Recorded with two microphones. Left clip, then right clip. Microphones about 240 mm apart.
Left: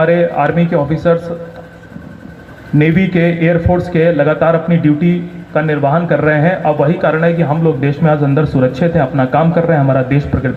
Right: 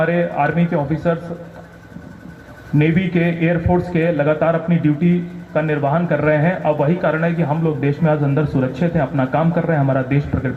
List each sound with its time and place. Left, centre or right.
0.0 s speech: left
2.7 s speech: left